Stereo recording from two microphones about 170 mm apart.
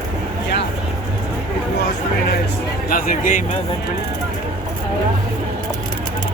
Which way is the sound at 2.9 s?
55° left (ahead or behind).